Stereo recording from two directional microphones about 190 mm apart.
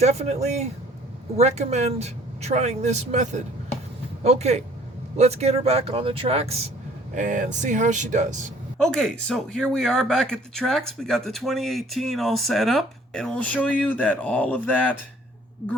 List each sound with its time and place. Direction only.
0.0 s speech: 35° right (ahead or behind)
7.2 s speech: 40° right (ahead or behind)
8.8 s speech: 5° left (ahead or behind)